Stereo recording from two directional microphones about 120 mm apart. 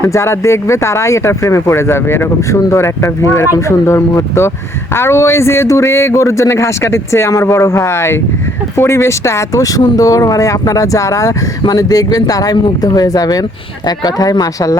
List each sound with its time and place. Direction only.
0.0 s speech: 25° left (ahead or behind)